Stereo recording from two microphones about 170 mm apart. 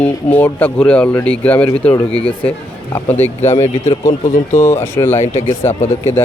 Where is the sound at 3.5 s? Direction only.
40° left (ahead or behind).